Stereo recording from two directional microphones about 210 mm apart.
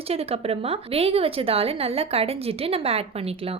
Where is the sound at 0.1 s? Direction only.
30° right (ahead or behind).